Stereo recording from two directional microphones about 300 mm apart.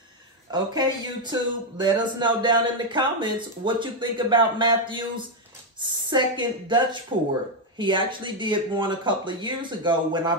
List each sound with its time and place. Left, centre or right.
0.5 s speech: centre